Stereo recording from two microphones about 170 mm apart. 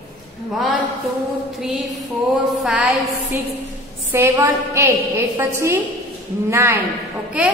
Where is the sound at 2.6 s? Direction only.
Centre (ahead or behind).